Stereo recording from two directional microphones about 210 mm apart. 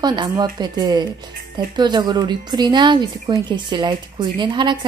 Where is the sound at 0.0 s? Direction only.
20° right (ahead or behind).